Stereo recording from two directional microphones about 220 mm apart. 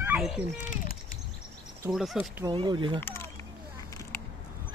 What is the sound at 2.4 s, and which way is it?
Speech, 20° right (ahead or behind).